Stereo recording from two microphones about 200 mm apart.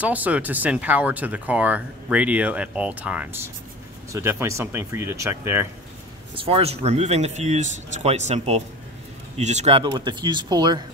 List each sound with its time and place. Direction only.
0.0 s speech: 10° right (ahead or behind)
6.3 s speech: 30° right (ahead or behind)